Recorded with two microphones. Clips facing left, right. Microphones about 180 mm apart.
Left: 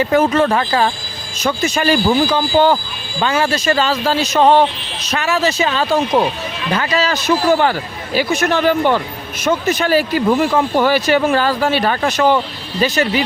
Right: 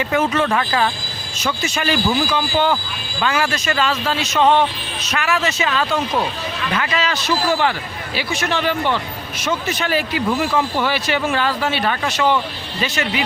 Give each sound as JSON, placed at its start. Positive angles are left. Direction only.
{"t": 0.0, "sound": "speech", "side_deg": 35}
{"t": 1.5, "sound": "speech", "side_deg": 40}